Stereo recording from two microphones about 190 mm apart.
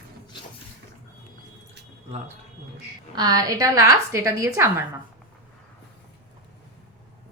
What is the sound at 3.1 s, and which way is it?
A woman's voice, 20° right (ahead or behind).